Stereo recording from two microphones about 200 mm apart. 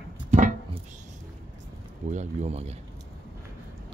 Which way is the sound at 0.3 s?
40° right (ahead or behind).